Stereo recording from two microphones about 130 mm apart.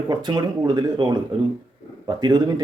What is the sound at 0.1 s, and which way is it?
Speech, 35° right (ahead or behind).